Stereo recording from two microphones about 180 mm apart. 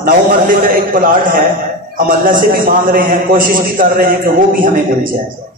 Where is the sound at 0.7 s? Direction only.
50° right (ahead or behind).